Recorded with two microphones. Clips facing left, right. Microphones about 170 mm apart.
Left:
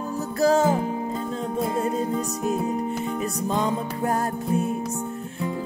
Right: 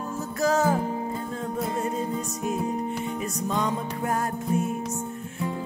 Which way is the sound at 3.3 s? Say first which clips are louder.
Left 2 dB; 30° left (ahead or behind).